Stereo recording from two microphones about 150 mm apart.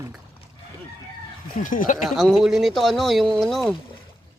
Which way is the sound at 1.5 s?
65° left (ahead or behind).